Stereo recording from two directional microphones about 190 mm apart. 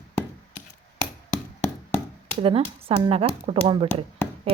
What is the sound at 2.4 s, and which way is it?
Speech, 30° right (ahead or behind).